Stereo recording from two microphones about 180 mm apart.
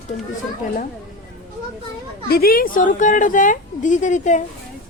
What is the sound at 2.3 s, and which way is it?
A woman's voice, 55° left (ahead or behind).